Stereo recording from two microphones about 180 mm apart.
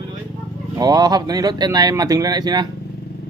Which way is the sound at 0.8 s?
20° right (ahead or behind).